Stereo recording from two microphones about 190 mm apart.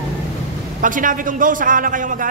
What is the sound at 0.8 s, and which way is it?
A man's voice, 45° right (ahead or behind).